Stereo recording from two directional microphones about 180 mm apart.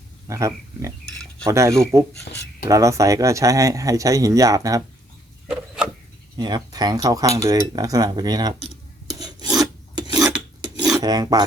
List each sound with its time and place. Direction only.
0.3 s speech: 15° right (ahead or behind)
5.5 s a sound: 5° right (ahead or behind)
6.3 s speech: 25° right (ahead or behind)
9.1 s filing: 20° right (ahead or behind)
11.0 s speech: 20° right (ahead or behind)